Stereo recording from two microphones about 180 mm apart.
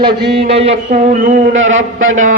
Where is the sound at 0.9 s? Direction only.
50° right (ahead or behind).